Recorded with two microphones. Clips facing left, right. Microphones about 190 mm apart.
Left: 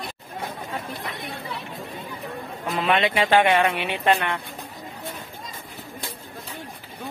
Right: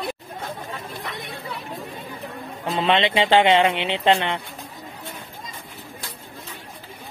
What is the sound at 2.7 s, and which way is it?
Speech, 25° right (ahead or behind).